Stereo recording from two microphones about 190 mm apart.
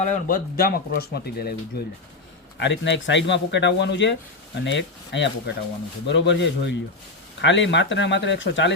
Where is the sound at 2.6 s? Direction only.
70° left (ahead or behind).